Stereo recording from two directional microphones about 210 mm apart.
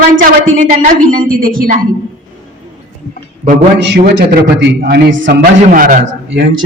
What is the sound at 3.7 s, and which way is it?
A man's voice, 55° right (ahead or behind).